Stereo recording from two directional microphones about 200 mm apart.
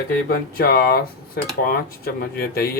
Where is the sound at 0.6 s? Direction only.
50° left (ahead or behind).